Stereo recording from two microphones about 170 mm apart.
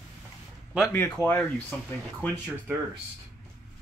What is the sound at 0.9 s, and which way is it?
Speech, 10° left (ahead or behind).